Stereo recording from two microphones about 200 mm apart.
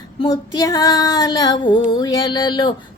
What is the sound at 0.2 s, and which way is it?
Female singing, 15° left (ahead or behind).